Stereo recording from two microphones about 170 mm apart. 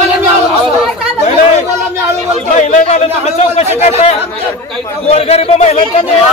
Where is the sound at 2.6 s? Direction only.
45° left (ahead or behind).